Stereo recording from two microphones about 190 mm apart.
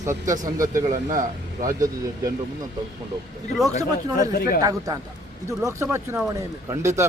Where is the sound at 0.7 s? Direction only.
40° right (ahead or behind).